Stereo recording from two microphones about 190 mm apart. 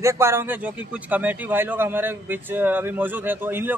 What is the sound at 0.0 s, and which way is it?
A man's voice, 15° right (ahead or behind).